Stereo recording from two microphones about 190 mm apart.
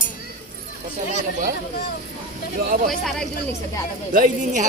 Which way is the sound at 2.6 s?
50° right (ahead or behind).